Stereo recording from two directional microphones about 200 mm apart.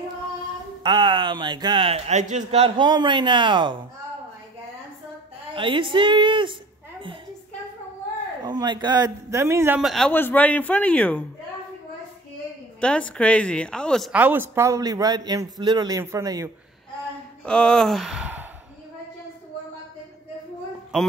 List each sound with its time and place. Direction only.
0.8 s speech: 25° right (ahead or behind)
5.5 s speech: 25° right (ahead or behind)
8.5 s a man's voice: 20° right (ahead or behind); by 11.2 s 5° left (ahead or behind)
12.8 s a woman's voice: 5° left (ahead or behind); by 16.4 s 15° right (ahead or behind)
17.5 s speech: 5° left (ahead or behind)